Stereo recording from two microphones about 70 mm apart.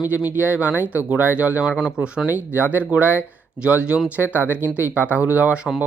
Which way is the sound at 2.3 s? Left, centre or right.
Right.